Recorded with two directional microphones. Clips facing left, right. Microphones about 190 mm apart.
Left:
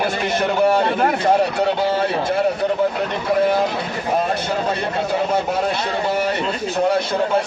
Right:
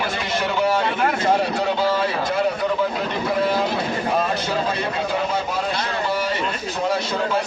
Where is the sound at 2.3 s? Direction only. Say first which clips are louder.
Left 2 dB; 55° left (ahead or behind).